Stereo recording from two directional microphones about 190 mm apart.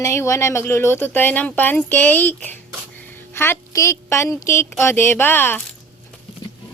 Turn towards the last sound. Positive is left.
turn(degrees=10)  # may be behind; listen again after turning